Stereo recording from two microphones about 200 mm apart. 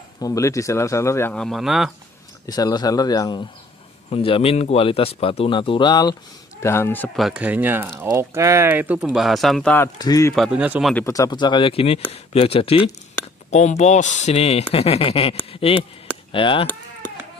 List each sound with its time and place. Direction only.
0.2 s speech: 15° left (ahead or behind); by 1.9 s centre (ahead or behind)
2.4 s speech: 20° left (ahead or behind)
7.2 s speech: 5° right (ahead or behind)
9.9 s speech: 20° left (ahead or behind)
10.3 s speech: centre (ahead or behind)
11.1 s speech: 20° left (ahead or behind)